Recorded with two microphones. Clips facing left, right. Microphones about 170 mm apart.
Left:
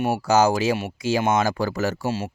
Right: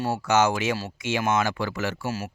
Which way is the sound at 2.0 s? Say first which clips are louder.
Left 4 dB; 25° left (ahead or behind).